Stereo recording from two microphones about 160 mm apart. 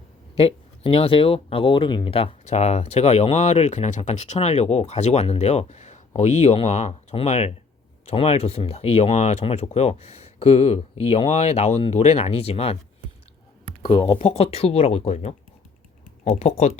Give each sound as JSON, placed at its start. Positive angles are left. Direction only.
{"t": 0.3, "sound": "speech", "side_deg": 35}
{"t": 13.8, "sound": "speech", "side_deg": 35}